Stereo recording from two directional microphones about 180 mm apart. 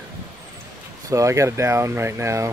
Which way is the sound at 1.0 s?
15° right (ahead or behind).